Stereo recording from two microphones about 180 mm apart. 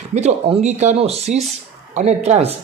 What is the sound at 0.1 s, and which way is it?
Speech, 35° right (ahead or behind).